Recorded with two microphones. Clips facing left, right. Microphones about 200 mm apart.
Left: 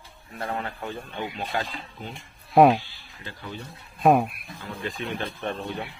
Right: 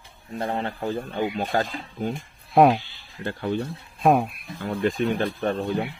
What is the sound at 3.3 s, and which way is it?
Speech, 60° right (ahead or behind).